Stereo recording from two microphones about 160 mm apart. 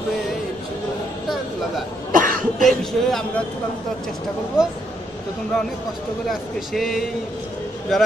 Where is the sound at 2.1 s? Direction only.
55° right (ahead or behind).